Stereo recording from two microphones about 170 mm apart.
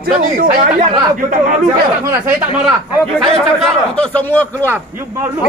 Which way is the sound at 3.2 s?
Centre (ahead or behind).